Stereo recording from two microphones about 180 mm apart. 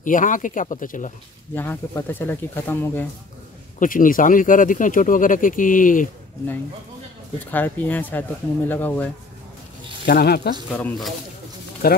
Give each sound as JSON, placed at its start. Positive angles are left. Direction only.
{"t": 0.0, "sound": "speech", "side_deg": 45}
{"t": 1.5, "sound": "speech", "side_deg": 10}
{"t": 3.8, "sound": "speech", "side_deg": 50}
{"t": 7.5, "sound": "speech", "side_deg": 10}
{"t": 10.0, "sound": "speech", "side_deg": 60}
{"t": 10.7, "sound": "speech", "side_deg": 10}
{"t": 11.8, "sound": "speech", "side_deg": 55}